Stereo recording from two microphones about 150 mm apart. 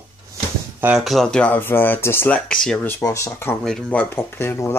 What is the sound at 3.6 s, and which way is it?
Speech, 5° left (ahead or behind).